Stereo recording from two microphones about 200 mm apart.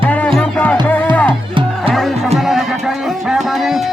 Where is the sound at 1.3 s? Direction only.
25° right (ahead or behind).